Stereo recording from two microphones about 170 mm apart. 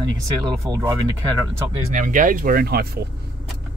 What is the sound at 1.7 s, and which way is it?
Speech, 50° right (ahead or behind).